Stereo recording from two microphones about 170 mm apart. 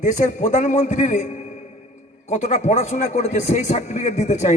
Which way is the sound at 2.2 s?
45° left (ahead or behind).